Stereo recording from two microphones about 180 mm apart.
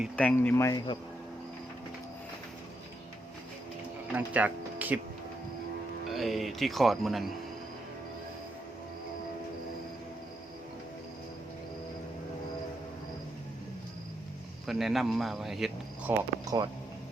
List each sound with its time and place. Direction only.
0.0 s speech: 5° left (ahead or behind)
4.1 s speech: 10° right (ahead or behind)
6.1 s speech: centre (ahead or behind)
14.7 s speech: centre (ahead or behind)
16.1 s speech: 20° right (ahead or behind)